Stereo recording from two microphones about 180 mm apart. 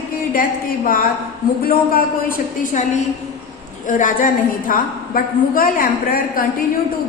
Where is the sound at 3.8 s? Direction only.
45° left (ahead or behind).